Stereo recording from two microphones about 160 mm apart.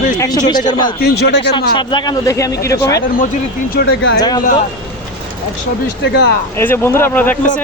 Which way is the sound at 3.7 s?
75° left (ahead or behind).